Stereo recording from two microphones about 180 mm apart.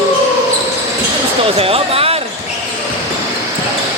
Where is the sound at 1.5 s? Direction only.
30° right (ahead or behind).